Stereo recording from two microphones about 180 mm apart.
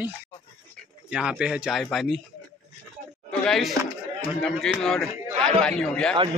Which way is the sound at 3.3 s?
5° left (ahead or behind).